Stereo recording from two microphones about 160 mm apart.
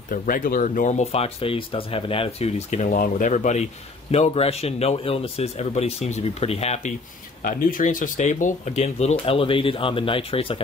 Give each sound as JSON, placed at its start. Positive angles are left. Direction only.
{"t": 0.1, "sound": "speech", "side_deg": 60}
{"t": 7.4, "sound": "speech", "side_deg": 60}